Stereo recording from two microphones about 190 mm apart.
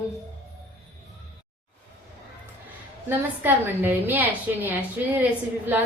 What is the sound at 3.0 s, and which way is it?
A woman's voice, 10° right (ahead or behind).